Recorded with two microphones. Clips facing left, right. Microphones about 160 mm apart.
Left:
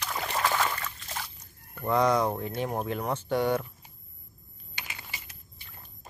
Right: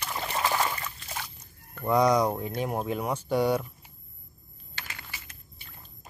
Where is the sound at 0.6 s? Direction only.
10° right (ahead or behind).